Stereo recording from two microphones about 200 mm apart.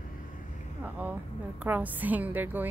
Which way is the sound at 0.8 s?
10° right (ahead or behind).